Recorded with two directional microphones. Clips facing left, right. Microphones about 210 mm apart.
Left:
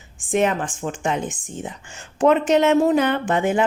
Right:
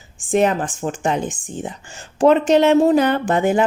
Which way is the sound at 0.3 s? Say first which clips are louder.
Right 3 dB; 35° right (ahead or behind).